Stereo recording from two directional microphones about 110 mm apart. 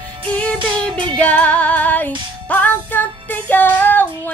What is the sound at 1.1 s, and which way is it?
Music, 10° left (ahead or behind).